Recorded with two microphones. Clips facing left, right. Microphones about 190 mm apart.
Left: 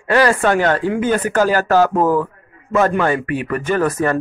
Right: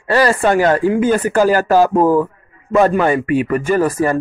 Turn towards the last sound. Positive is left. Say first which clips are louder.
# right 2 dB
turn(degrees=-10)  # may be behind; listen again after turning